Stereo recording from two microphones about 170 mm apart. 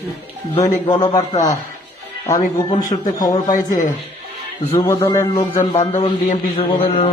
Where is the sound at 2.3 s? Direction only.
20° left (ahead or behind).